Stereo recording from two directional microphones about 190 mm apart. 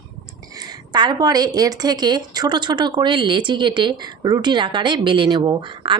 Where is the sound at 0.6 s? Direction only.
25° right (ahead or behind).